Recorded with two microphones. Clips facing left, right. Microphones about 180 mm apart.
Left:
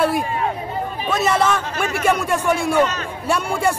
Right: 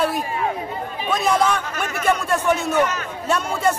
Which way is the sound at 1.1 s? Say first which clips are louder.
Left 1 dB; 5° left (ahead or behind).